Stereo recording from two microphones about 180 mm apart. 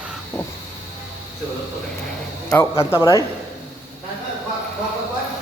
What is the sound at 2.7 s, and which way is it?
Speech, 15° left (ahead or behind).